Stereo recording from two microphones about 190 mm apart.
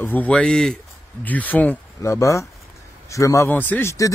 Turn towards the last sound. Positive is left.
turn(degrees=15)  # may be behind; listen again after turning